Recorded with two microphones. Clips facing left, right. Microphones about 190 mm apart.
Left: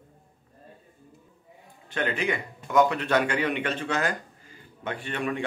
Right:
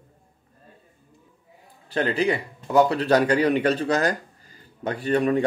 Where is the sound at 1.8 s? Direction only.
35° right (ahead or behind).